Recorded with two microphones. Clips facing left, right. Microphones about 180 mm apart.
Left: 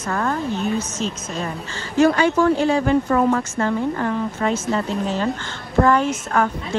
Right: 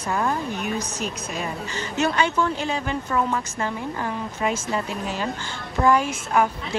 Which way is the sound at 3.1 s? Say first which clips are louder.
Left 6 dB; 55° left (ahead or behind).